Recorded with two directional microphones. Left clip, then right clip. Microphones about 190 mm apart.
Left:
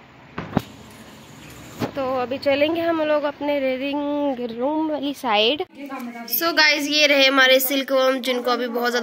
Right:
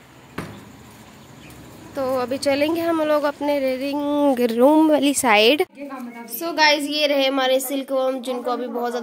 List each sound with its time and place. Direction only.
2.0 s speech: 20° right (ahead or behind)
4.1 s speech: 30° right (ahead or behind)
4.4 s speech: 50° right (ahead or behind)
6.2 s a woman's voice: 5° right (ahead or behind)